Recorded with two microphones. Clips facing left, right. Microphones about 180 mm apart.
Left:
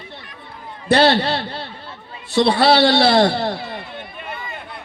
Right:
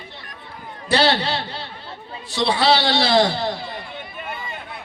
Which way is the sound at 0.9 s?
50° left (ahead or behind).